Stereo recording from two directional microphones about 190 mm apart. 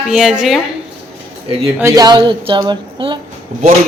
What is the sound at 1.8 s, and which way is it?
Speech, 15° right (ahead or behind).